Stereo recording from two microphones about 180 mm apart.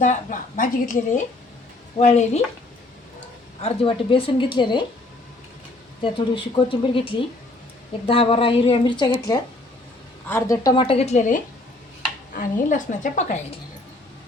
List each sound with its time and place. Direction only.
0.0 s a woman's voice: 45° left (ahead or behind)
3.6 s speech: 30° left (ahead or behind)
6.0 s a woman's voice: 30° left (ahead or behind)